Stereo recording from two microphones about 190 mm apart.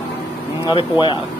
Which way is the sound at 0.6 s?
25° left (ahead or behind).